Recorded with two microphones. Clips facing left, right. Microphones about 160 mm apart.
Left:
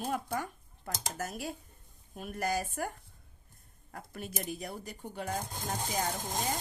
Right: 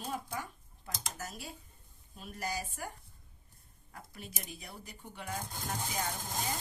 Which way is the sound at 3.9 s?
50° left (ahead or behind).